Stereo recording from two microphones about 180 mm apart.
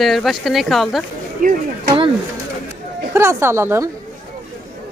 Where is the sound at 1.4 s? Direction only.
50° right (ahead or behind).